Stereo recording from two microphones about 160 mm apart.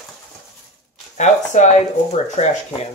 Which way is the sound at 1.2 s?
45° left (ahead or behind).